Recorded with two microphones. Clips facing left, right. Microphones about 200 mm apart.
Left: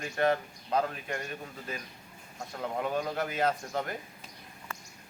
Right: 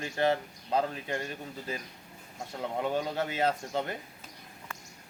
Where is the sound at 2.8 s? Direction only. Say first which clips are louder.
Right 1 dB; 25° right (ahead or behind).